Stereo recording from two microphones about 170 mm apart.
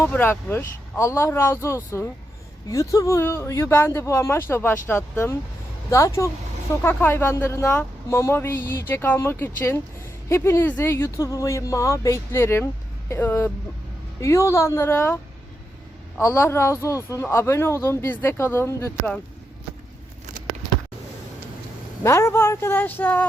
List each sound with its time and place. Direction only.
0.0 s a man's voice: 10° left (ahead or behind)
22.0 s a man's voice: 15° left (ahead or behind)